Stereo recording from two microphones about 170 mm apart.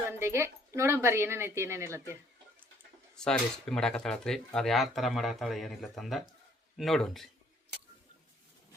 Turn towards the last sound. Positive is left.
turn(degrees=0)  # may be behind; listen again after turning